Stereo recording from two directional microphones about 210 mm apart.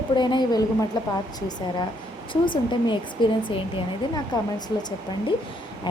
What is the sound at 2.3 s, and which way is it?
Speech, 20° left (ahead or behind).